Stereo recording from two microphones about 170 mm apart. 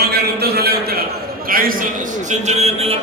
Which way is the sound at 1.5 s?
55° right (ahead or behind).